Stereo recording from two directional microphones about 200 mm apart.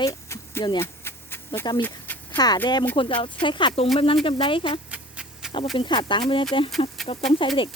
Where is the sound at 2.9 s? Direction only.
25° left (ahead or behind).